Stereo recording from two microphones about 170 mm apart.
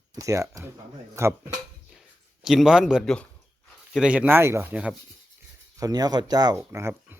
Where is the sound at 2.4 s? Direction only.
5° right (ahead or behind).